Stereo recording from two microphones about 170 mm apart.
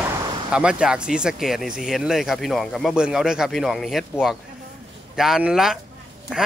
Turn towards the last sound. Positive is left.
turn(degrees=-5)  # may be behind; listen again after turning